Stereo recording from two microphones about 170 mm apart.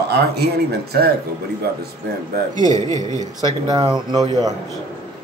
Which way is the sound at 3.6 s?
25° right (ahead or behind).